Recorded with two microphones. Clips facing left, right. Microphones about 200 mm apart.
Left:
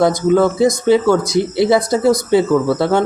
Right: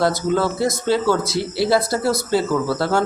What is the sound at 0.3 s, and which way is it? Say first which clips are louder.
Speech: left 7 dB; 20° left (ahead or behind).